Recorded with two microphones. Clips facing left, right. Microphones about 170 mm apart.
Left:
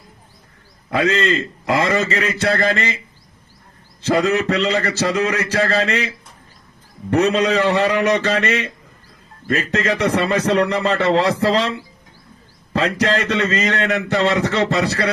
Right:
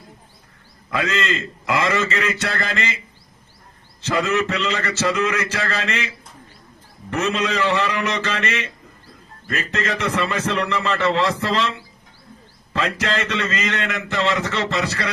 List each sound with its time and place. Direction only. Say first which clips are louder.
0.9 s a man's voice: left 5 dB; 35° left (ahead or behind)
4.0 s a man's voice: left 4 dB; 40° left (ahead or behind)
7.1 s a man's voice: left 6 dB; 35° left (ahead or behind)
12.7 s a man's voice: left 5 dB; 35° left (ahead or behind)